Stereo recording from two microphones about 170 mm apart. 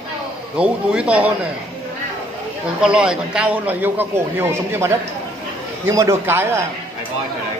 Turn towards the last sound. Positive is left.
turn(degrees=-15)  # may be behind; listen again after turning